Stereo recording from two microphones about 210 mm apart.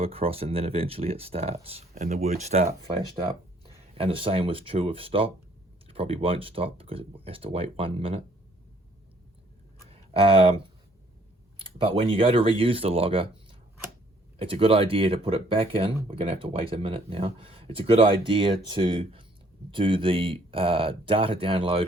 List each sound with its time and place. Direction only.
0.0 s speech: 25° right (ahead or behind)
9.9 s speech: 25° right (ahead or behind)
11.6 s speech: 25° right (ahead or behind)
14.3 s speech: 25° right (ahead or behind)